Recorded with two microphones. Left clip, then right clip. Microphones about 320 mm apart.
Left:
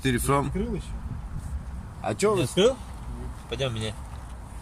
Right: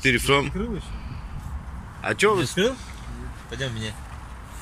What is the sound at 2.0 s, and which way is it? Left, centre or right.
Speech, centre.